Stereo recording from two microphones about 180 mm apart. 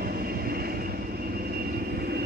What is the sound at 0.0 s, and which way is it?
Vehicle, 55° right (ahead or behind).